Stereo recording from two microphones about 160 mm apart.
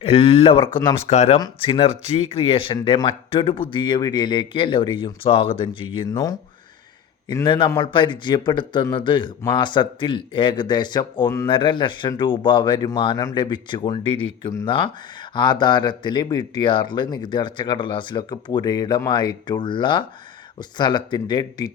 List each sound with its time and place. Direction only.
0.0 s speech: 35° left (ahead or behind)
1.4 s speech: 30° left (ahead or behind)
7.4 s speech: 30° left (ahead or behind)